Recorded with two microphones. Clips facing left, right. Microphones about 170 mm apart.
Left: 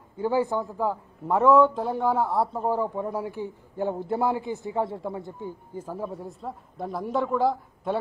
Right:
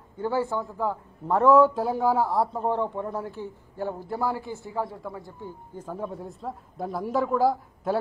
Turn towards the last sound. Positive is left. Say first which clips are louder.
# right 1 dB
turn(degrees=0)  # may be behind; listen again after turning